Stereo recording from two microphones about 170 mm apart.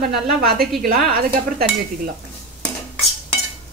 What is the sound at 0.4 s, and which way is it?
Speech, 65° right (ahead or behind).